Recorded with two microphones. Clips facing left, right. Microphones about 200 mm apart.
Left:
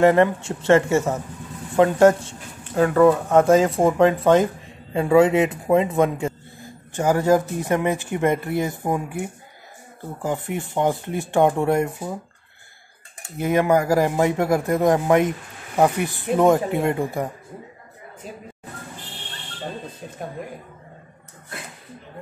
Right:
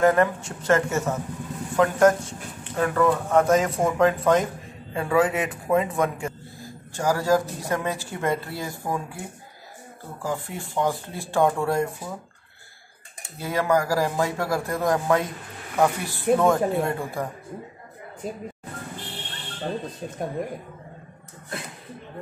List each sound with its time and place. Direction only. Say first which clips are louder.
0.0 s speech: left 4 dB; 25° left (ahead or behind)
10.2 s speech: left 4 dB; 20° left (ahead or behind)
13.4 s speech: left 4 dB; 20° left (ahead or behind)